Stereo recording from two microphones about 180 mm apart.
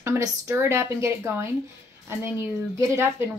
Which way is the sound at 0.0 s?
15° right (ahead or behind).